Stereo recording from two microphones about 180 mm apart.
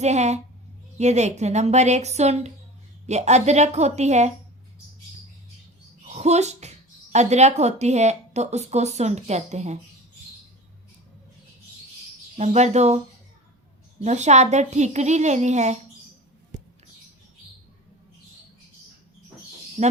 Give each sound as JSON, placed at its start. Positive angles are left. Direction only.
{"t": 0.0, "sound": "a woman's voice", "side_deg": -40}
{"t": 6.1, "sound": "a woman's voice", "side_deg": -40}
{"t": 12.4, "sound": "a woman's voice", "side_deg": -40}
{"t": 14.0, "sound": "a woman's voice", "side_deg": -40}
{"t": 19.8, "sound": "speech", "side_deg": -35}